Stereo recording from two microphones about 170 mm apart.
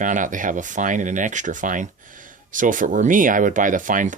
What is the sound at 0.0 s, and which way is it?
Speech, 50° right (ahead or behind).